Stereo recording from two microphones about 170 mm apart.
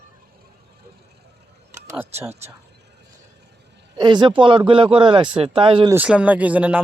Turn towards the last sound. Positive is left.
turn(degrees=-10)  # may be behind; listen again after turning